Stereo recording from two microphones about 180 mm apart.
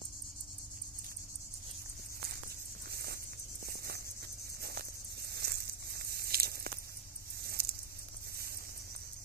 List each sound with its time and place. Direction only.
2.9 s patter: 60° right (ahead or behind)
3.6 s insect: 60° right (ahead or behind)
5.3 s a sound: 65° right (ahead or behind)